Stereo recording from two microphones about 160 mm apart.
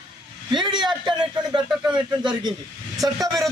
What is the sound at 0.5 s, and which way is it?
A man's voice, 30° right (ahead or behind).